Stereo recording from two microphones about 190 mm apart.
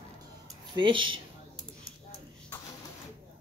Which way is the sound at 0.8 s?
25° right (ahead or behind).